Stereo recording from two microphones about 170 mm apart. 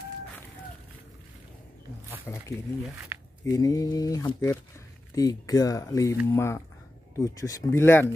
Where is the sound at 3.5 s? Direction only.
20° left (ahead or behind).